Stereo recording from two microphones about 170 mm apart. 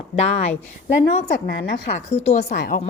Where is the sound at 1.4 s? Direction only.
80° left.